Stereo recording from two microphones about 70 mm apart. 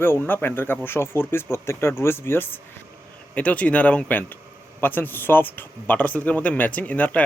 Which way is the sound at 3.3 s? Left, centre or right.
Left.